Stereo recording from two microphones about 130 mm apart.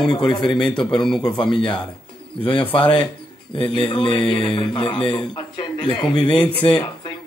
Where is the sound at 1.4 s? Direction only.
5° left (ahead or behind).